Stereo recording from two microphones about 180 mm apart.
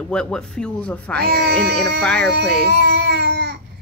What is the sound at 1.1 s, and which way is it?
Speech, 65° right (ahead or behind).